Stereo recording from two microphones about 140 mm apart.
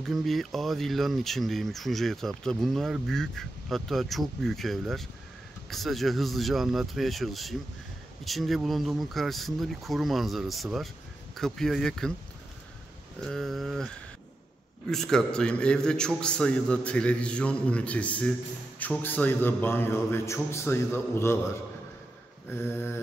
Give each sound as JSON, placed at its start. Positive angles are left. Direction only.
{"t": 0.0, "sound": "speech", "side_deg": 0}
{"t": 13.2, "sound": "speech", "side_deg": 5}
{"t": 14.9, "sound": "a man's voice", "side_deg": 5}
{"t": 22.5, "sound": "a man's voice", "side_deg": 15}